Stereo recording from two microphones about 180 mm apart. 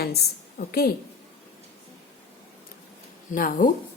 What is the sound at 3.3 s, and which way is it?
Speech, 50° left (ahead or behind).